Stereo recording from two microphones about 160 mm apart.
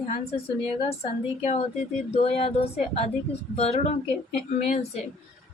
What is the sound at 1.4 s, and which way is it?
Speech, 40° left (ahead or behind).